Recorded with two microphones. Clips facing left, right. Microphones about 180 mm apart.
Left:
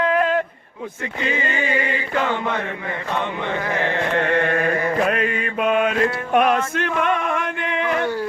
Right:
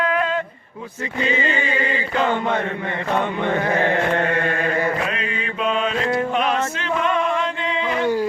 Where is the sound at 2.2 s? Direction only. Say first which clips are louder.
Right 6 dB; 50° right (ahead or behind).